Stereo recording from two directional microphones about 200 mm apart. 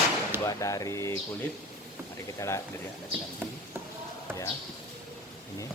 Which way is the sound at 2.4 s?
15° left (ahead or behind).